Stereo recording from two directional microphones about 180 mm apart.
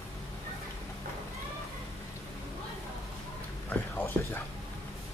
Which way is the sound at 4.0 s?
15° left (ahead or behind).